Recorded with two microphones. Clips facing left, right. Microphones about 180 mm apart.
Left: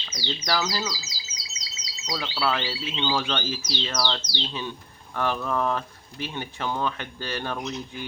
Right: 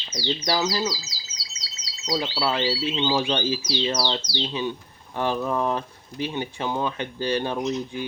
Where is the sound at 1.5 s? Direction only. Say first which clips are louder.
Left 1 dB; 10° left (ahead or behind).